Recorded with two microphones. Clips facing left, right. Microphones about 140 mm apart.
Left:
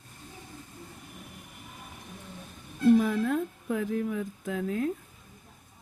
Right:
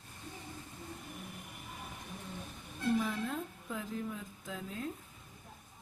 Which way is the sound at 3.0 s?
60° left (ahead or behind).